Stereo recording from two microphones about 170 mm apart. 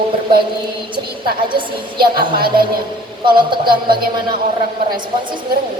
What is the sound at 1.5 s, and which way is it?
A woman's voice, 30° right (ahead or behind).